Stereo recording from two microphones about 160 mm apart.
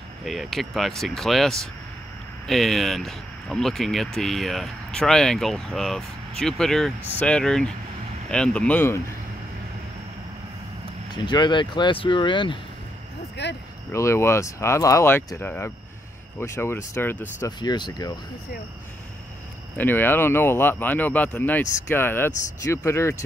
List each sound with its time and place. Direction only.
0.2 s speech: centre (ahead or behind)
11.2 s speech: 30° left (ahead or behind)
13.4 s speech: 90° left
13.9 s speech: 15° left (ahead or behind)
17.5 s speech: 25° left (ahead or behind)
19.8 s speech: 10° left (ahead or behind)